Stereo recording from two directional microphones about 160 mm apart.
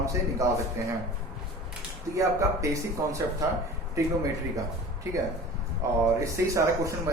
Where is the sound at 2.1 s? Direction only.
20° right (ahead or behind).